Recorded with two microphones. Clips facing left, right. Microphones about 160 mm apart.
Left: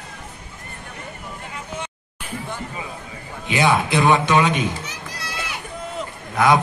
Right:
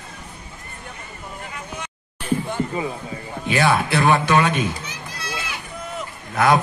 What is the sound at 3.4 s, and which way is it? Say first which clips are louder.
A man's voice: even; 20° left (ahead or behind).